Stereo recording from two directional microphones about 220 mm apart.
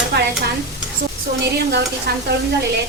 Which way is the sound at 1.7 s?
45° right (ahead or behind).